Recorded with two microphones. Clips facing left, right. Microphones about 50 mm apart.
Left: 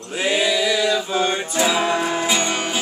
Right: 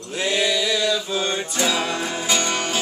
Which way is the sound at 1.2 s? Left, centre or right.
Centre.